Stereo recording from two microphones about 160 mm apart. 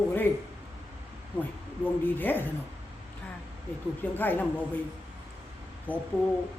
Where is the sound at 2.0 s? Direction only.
10° left (ahead or behind).